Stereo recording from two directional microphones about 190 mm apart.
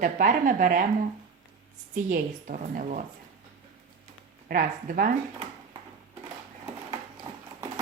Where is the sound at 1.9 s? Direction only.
45° right (ahead or behind).